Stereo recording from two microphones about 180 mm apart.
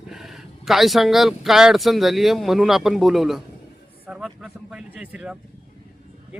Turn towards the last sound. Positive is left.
turn(degrees=-5)  # may be behind; listen again after turning